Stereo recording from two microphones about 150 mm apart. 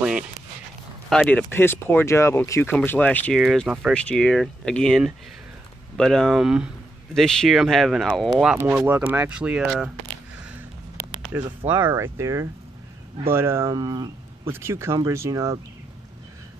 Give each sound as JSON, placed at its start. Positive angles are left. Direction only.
{"t": 1.1, "sound": "speech", "side_deg": 5}
{"t": 1.5, "sound": "speech", "side_deg": 15}
{"t": 3.3, "sound": "speech", "side_deg": -5}
{"t": 3.9, "sound": "speech", "side_deg": 5}
{"t": 8.5, "sound": "speech", "side_deg": -15}
{"t": 11.3, "sound": "speech", "side_deg": -15}